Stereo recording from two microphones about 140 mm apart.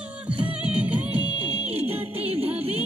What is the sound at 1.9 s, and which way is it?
Music, 45° right (ahead or behind).